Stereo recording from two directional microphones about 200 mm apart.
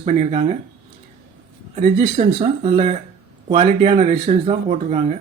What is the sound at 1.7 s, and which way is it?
Speech, 40° right (ahead or behind).